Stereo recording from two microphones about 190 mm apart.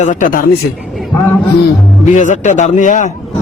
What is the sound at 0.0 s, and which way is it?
Speech, 40° left (ahead or behind).